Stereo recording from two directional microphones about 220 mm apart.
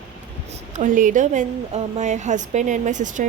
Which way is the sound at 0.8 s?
35° right (ahead or behind).